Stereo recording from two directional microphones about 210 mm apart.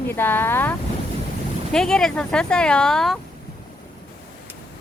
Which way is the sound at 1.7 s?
Centre (ahead or behind).